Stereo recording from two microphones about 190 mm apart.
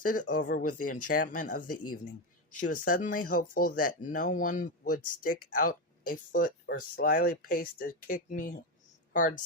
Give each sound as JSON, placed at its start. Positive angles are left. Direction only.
{"t": 0.0, "sound": "speech", "side_deg": 45}